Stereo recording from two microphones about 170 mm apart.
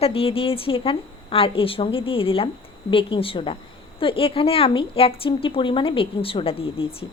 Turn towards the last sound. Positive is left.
turn(degrees=35)  # may be behind; listen again after turning